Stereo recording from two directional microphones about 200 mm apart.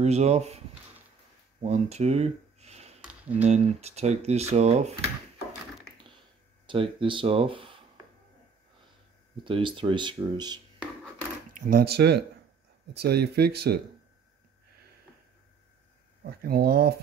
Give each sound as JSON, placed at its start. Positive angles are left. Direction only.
{"t": 0.0, "sound": "speech", "side_deg": -35}
{"t": 1.6, "sound": "a sound", "side_deg": -35}
{"t": 3.1, "sound": "a sound", "side_deg": -10}
{"t": 3.4, "sound": "speech", "side_deg": -30}
{"t": 6.7, "sound": "speech", "side_deg": -25}
{"t": 9.4, "sound": "speech", "side_deg": -25}
{"t": 11.5, "sound": "speech", "side_deg": -45}
{"t": 16.3, "sound": "speech", "side_deg": -50}